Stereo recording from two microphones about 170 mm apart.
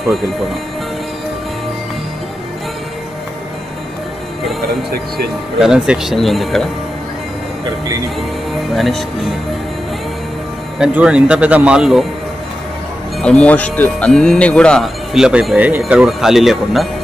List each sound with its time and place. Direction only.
4.9 s speech: 65° right (ahead or behind)
5.6 s speech: 5° right (ahead or behind)
8.7 s speech: centre (ahead or behind)
10.8 s speech: 5° right (ahead or behind)
13.2 s speech: 5° left (ahead or behind)